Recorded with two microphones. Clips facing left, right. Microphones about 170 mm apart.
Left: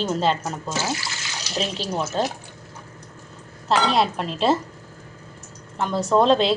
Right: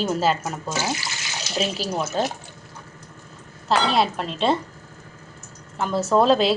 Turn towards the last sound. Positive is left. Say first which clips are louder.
# even
turn(degrees=-5)  # may be behind; listen again after turning